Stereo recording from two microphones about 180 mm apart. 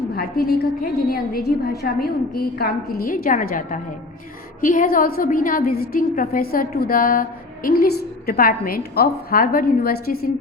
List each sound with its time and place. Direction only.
0.2 s a woman's voice: 55° left (ahead or behind)